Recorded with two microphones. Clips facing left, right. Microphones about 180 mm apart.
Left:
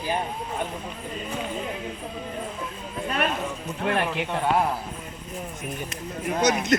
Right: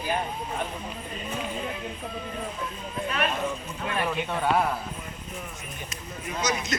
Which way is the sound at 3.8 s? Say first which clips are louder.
Left 3 dB; 65° left (ahead or behind).